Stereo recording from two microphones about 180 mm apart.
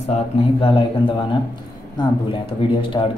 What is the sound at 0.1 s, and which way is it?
Speech, 30° left (ahead or behind).